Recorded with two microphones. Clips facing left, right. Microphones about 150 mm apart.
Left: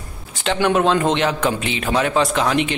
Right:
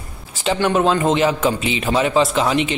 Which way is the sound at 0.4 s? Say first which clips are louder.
Even; centre (ahead or behind).